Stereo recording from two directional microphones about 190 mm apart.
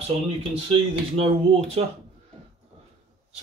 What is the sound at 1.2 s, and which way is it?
Speech, 30° right (ahead or behind).